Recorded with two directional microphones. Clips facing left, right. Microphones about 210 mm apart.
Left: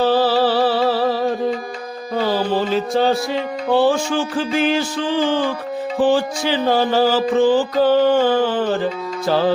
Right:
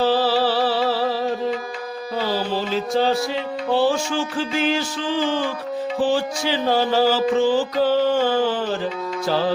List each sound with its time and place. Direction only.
0.0 s a sound: 55° left (ahead or behind)
3.7 s mantra: 55° left (ahead or behind)
6.0 s mantra: 55° left (ahead or behind)